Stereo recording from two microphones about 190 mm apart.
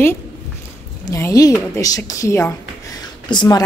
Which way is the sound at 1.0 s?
15° left (ahead or behind).